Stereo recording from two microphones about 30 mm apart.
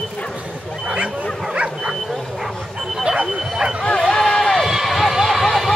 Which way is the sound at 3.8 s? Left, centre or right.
Left.